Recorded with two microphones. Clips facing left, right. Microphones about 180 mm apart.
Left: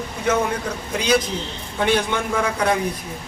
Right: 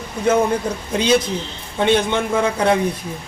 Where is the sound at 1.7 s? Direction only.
25° right (ahead or behind).